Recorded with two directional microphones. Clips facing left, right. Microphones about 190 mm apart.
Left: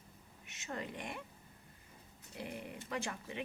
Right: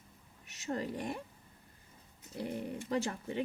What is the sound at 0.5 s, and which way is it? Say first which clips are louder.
Speech: right 6 dB; 35° right (ahead or behind).